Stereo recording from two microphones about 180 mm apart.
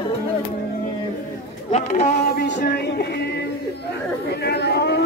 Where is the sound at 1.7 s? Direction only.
40° left (ahead or behind).